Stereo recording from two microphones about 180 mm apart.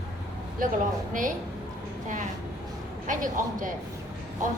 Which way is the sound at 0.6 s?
50° right (ahead or behind).